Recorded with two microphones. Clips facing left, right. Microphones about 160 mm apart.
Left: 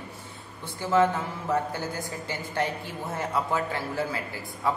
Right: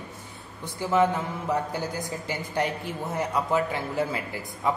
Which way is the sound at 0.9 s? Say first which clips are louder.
Even; 15° right (ahead or behind).